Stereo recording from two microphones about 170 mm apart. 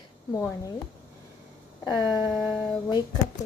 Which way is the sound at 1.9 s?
25° left (ahead or behind).